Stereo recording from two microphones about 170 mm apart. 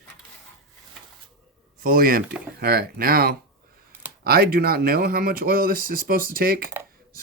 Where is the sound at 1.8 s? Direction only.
55° right (ahead or behind).